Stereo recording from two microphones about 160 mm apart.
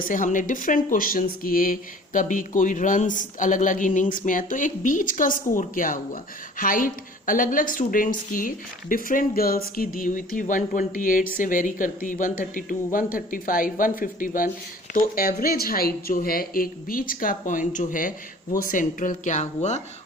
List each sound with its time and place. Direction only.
0.0 s a woman's voice: 55° left (ahead or behind)